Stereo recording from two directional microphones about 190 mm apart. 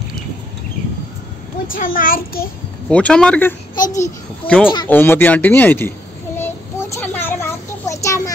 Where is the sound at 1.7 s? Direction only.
45° left (ahead or behind).